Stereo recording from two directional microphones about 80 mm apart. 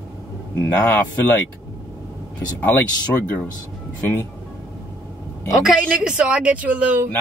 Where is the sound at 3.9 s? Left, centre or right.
Left.